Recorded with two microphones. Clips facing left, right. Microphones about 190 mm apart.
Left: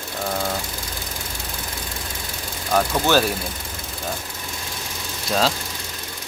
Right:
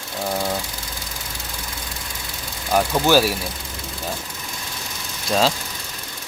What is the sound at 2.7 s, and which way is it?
Speech, 10° right (ahead or behind).